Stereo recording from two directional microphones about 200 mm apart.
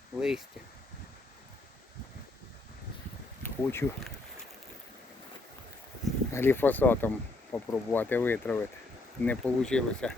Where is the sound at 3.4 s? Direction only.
10° left (ahead or behind).